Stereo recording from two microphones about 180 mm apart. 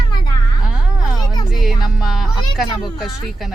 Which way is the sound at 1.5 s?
Centre (ahead or behind).